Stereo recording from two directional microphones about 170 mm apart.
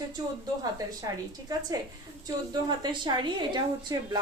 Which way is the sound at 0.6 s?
20° right (ahead or behind).